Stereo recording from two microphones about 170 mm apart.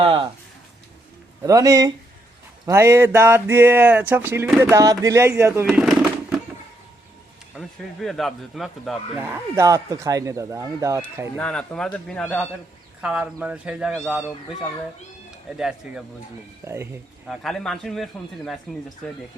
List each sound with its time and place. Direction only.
0.0 s speech: 30° right (ahead or behind)
1.4 s speech: 20° right (ahead or behind)
4.4 s a man's voice: centre (ahead or behind)
4.7 s speech: 20° right (ahead or behind)
5.6 s a sound: centre (ahead or behind)
8.0 s a man's voice: centre (ahead or behind)
9.1 s speech: 15° right (ahead or behind)
11.3 s a man's voice: 5° left (ahead or behind)
13.0 s speech: 5° right (ahead or behind)
15.4 s a man's voice: 5° right (ahead or behind)
16.6 s speech: 15° right (ahead or behind)
17.2 s a man's voice: centre (ahead or behind)